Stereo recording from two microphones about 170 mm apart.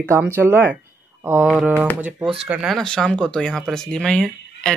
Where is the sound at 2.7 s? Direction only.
5° left (ahead or behind).